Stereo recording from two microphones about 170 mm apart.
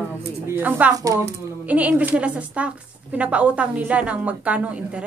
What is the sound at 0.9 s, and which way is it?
Speech, 20° right (ahead or behind).